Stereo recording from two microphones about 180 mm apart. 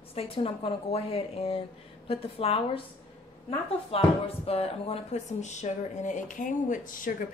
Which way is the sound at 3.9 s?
35° left (ahead or behind).